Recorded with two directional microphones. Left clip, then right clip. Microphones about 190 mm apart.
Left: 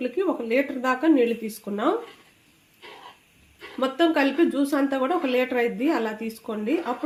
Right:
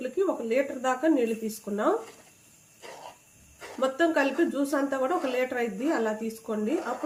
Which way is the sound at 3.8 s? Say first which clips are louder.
Left 3 dB; 35° left (ahead or behind).